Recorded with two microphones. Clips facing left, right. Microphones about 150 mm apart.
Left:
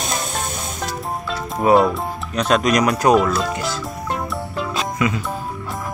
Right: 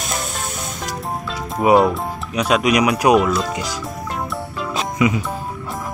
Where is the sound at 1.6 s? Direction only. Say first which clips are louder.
Right 1 dB; 10° right (ahead or behind).